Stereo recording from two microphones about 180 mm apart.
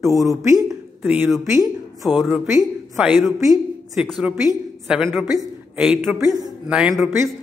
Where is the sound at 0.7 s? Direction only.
5° right (ahead or behind).